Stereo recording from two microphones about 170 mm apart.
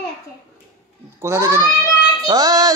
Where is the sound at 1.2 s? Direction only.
15° right (ahead or behind).